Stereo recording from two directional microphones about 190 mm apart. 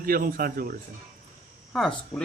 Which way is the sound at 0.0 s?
50° right (ahead or behind).